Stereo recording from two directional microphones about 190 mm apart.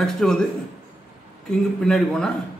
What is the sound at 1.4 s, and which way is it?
Speech, centre (ahead or behind).